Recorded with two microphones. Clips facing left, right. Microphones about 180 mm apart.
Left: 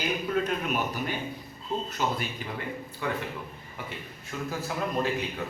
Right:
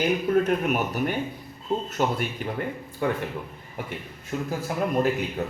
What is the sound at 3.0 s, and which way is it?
Speech, 45° right (ahead or behind).